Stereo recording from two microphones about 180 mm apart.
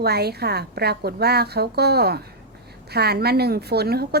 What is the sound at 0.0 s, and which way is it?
A woman's voice, 60° right (ahead or behind).